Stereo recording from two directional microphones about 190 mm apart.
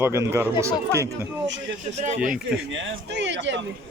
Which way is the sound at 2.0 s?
40° right (ahead or behind).